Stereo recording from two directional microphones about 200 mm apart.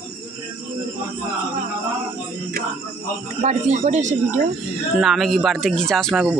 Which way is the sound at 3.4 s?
35° right (ahead or behind).